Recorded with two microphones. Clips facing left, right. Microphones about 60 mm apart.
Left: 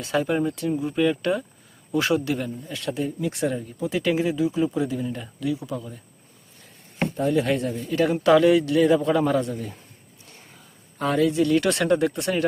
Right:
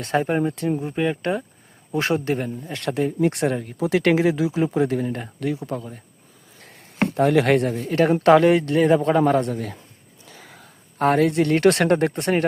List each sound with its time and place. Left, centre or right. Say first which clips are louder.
0.0 s speech: right 2 dB; right
2.8 s speech: right 6 dB; right
6.7 s speech: right 4 dB; right
10.4 s a sound: right 5 dB; right
10.9 s speech: right 3 dB; right
12.1 s speech: right 3 dB; right